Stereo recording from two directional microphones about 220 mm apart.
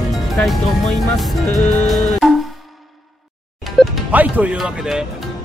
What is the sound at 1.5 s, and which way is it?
Music, 30° left (ahead or behind).